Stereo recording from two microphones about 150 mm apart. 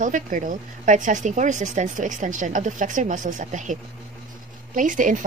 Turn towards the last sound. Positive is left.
turn(degrees=-60)  # may be behind; listen again after turning